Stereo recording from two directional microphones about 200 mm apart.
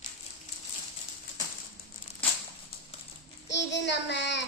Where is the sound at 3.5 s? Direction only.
60° left (ahead or behind).